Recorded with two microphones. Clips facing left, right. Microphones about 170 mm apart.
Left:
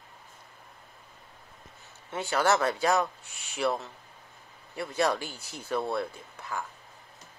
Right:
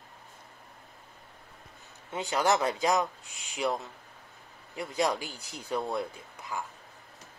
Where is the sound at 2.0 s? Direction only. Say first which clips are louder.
Left 1 dB; 15° right (ahead or behind).